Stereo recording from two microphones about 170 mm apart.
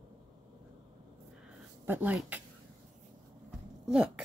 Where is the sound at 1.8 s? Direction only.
10° right (ahead or behind).